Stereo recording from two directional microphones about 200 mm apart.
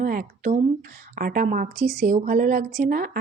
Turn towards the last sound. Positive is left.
turn(degrees=-45)  # may be behind; listen again after turning